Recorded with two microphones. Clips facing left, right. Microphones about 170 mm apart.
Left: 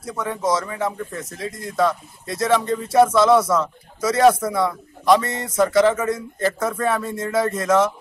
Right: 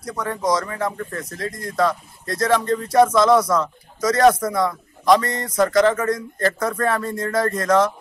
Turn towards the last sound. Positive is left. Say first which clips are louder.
# even
turn(degrees=5)  # may be behind; listen again after turning